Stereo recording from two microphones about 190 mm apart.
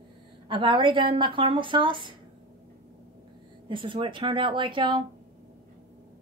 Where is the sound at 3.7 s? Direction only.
25° right (ahead or behind).